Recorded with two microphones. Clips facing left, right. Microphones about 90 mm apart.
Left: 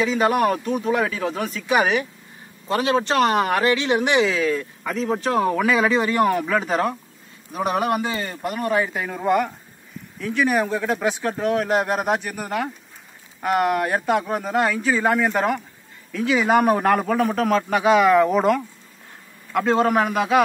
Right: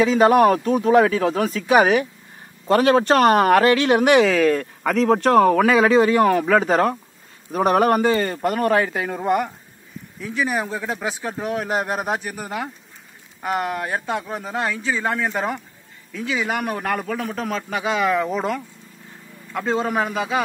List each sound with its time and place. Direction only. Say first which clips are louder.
0.0 s speech: right 5 dB; 30° right (ahead or behind); by 4.9 s 55° right (ahead or behind)
4.9 s speech: right 6 dB; 75° right (ahead or behind)
5.6 s speech: right 4 dB; 40° right (ahead or behind)
6.4 s speech: right 5 dB; 50° right (ahead or behind)
6.7 s speech: right 4 dB; 35° right (ahead or behind)
7.5 s speech: right 5 dB; 50° right (ahead or behind)
8.6 s speech: right 1 dB; 60° right (ahead or behind)
9.2 s speech: left 2 dB; 10° right (ahead or behind)
13.4 s speech: left 4 dB; centre (ahead or behind)
19.6 s speech: left 3 dB; centre (ahead or behind)